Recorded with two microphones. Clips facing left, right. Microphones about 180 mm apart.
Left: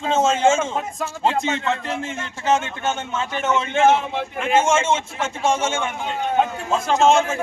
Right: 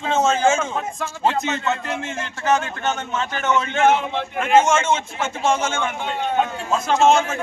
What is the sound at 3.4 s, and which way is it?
Speech, 30° left (ahead or behind).